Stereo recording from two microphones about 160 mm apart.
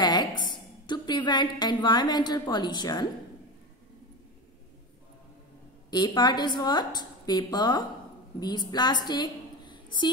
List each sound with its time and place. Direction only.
0.0 s a sound: 25° left (ahead or behind)
0.4 s a woman's voice: 30° left (ahead or behind)
5.9 s a woman's voice: 25° left (ahead or behind)